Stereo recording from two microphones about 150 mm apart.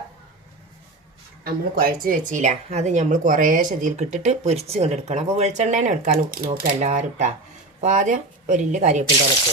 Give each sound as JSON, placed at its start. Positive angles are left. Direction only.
{"t": 1.7, "sound": "speech", "side_deg": -75}